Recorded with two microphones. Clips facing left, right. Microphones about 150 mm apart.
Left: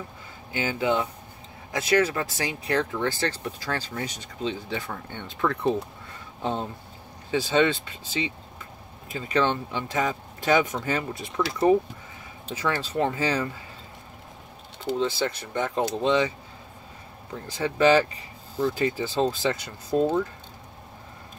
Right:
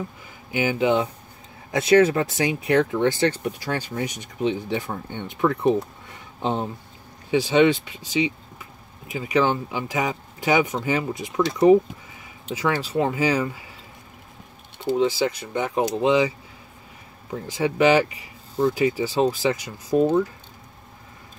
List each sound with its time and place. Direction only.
0.5 s speech: 15° right (ahead or behind)
12.4 s speech: 15° right (ahead or behind)
15.0 s speech: 15° right (ahead or behind)
17.5 s speech: 15° right (ahead or behind)